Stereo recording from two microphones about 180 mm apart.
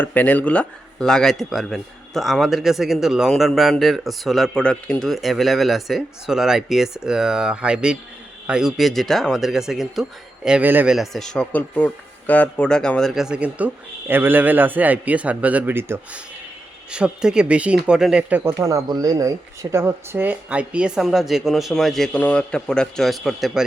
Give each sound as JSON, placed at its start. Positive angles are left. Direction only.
{"t": 0.0, "sound": "a man's voice", "side_deg": 10}